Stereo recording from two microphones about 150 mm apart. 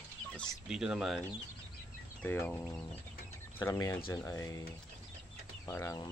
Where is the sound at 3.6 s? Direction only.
25° left (ahead or behind).